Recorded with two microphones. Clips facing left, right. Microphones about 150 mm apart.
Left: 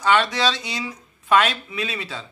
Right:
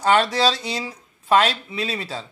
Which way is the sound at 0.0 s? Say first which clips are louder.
Right 2 dB; 35° right (ahead or behind).